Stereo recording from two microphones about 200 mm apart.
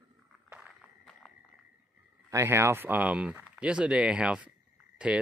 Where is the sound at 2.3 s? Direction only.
15° right (ahead or behind).